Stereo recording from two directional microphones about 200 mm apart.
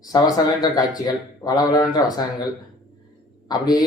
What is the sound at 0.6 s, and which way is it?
Speech, 20° left (ahead or behind).